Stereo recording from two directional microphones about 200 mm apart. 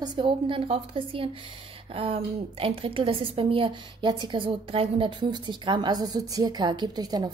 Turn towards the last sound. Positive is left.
turn(degrees=-20)  # may be behind; listen again after turning